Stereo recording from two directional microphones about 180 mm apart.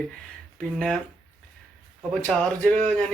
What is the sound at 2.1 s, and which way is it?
Speech, 5° left (ahead or behind).